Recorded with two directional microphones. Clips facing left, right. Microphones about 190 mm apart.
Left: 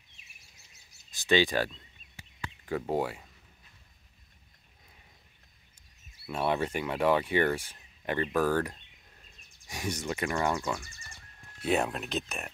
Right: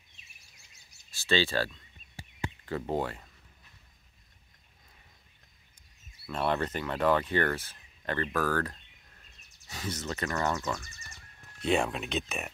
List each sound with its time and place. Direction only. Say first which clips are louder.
1.1 s speech: left 3 dB; 15° left (ahead or behind)
6.2 s speech: left 1 dB; 10° left (ahead or behind)